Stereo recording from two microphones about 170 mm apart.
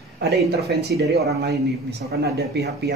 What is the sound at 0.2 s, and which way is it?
A man's voice, 75° right (ahead or behind).